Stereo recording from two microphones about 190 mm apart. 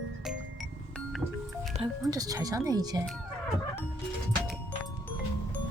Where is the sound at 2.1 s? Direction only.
20° right (ahead or behind).